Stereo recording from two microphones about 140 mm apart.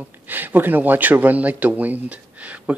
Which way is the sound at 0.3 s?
15° right (ahead or behind).